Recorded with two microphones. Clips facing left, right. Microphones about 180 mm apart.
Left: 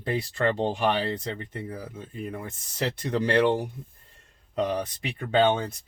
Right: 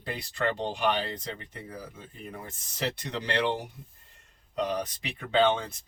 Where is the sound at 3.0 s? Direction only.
50° left (ahead or behind).